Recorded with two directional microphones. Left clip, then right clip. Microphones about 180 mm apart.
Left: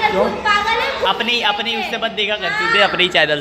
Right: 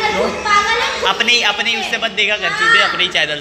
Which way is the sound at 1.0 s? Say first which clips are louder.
Right 3 dB; 15° left (ahead or behind).